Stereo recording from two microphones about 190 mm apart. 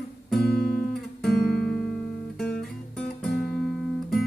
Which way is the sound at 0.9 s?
Centre (ahead or behind).